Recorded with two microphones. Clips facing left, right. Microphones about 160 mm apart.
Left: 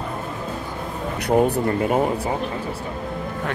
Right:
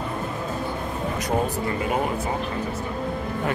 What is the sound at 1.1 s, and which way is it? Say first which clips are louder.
Speech: left 8 dB; 65° left (ahead or behind).